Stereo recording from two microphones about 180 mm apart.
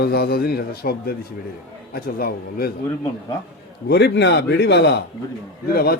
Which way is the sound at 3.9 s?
70° left (ahead or behind).